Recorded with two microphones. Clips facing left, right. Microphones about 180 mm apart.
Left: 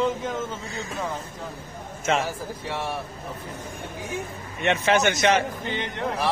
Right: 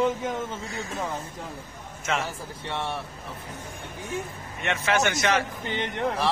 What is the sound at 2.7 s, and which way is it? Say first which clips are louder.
Speech: even; 5° left (ahead or behind).